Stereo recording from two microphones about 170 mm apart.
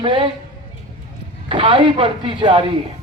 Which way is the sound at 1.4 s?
30° right (ahead or behind).